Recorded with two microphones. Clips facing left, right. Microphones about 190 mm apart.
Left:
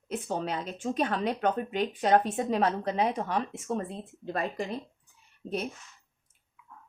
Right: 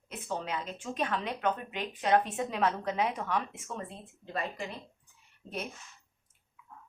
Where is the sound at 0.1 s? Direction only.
40° left (ahead or behind).